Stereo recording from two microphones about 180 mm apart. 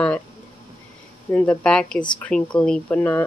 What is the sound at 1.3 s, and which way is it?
Speech, 10° left (ahead or behind).